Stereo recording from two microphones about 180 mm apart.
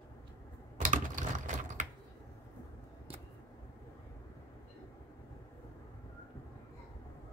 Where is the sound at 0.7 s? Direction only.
45° right (ahead or behind).